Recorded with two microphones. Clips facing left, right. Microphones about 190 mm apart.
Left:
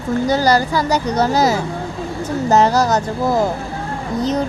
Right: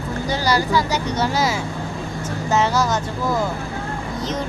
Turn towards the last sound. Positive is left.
turn(degrees=40)  # may be behind; listen again after turning